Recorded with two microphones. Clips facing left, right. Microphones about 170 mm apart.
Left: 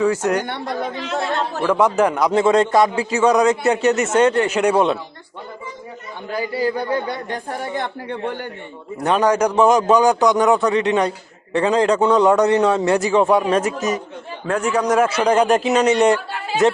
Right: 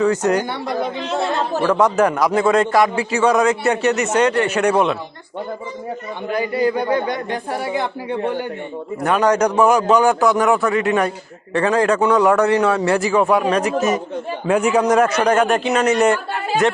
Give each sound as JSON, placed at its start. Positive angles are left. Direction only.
{"t": 0.0, "sound": "speech", "side_deg": 5}
{"t": 0.4, "sound": "a woman's voice", "side_deg": 55}
{"t": 1.6, "sound": "speech", "side_deg": 10}
{"t": 2.3, "sound": "a man's voice", "side_deg": 25}
{"t": 6.3, "sound": "a man's voice", "side_deg": -20}
{"t": 9.2, "sound": "a man's voice", "side_deg": 10}
{"t": 14.4, "sound": "a woman's voice", "side_deg": -10}
{"t": 14.9, "sound": "a man's voice", "side_deg": 10}